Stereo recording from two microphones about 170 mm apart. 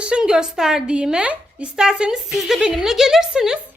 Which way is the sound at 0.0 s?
5° right (ahead or behind).